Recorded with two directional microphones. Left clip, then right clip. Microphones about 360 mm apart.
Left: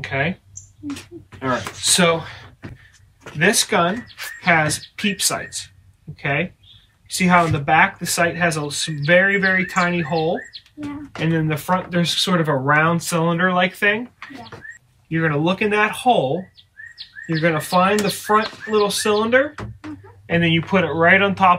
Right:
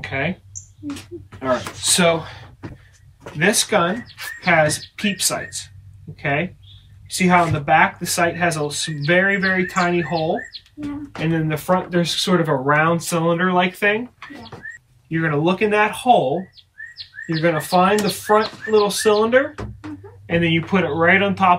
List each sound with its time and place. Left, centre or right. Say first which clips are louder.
0.0 s speech: left 1 dB; centre
1.4 s speech: right 1 dB; centre
15.0 s speech: even; centre